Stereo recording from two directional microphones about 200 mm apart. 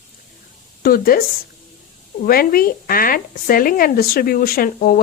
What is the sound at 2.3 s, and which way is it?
Speech, 45° left (ahead or behind).